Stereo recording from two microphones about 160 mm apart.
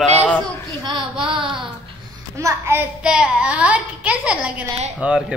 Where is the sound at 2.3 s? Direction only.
20° right (ahead or behind).